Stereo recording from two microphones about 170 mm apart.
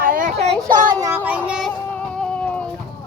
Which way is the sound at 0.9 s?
20° right (ahead or behind).